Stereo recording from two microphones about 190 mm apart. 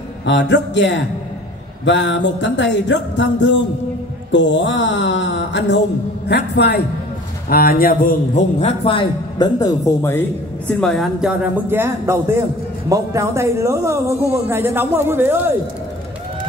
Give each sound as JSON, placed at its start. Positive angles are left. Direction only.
{"t": 0.2, "sound": "a sound", "side_deg": 70}
{"t": 6.2, "sound": "a man's voice", "side_deg": 60}
{"t": 7.4, "sound": "a man's voice", "side_deg": 50}
{"t": 10.7, "sound": "speech", "side_deg": 5}